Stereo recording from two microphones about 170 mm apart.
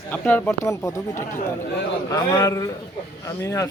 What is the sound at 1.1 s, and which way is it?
Speech, 50° left (ahead or behind).